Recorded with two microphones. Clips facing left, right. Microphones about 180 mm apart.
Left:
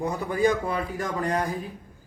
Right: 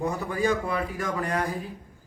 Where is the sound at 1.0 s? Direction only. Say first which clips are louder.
Left 4 dB; 35° left (ahead or behind).